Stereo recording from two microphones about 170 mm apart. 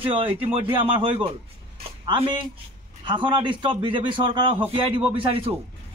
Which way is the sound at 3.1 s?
30° right (ahead or behind).